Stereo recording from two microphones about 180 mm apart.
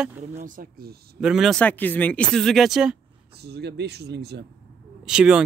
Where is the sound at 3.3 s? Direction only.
65° right (ahead or behind).